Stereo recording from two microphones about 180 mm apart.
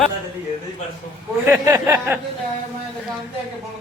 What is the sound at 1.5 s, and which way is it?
Speech, 15° right (ahead or behind).